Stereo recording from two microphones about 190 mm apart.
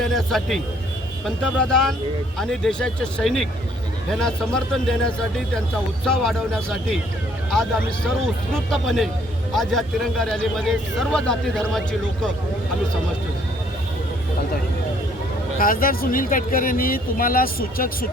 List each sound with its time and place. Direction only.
0.0 s a man's voice: centre (ahead or behind)
15.5 s speech: 50° left (ahead or behind)